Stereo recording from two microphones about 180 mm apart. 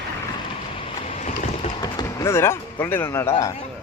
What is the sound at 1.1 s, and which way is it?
Boat, 40° left (ahead or behind).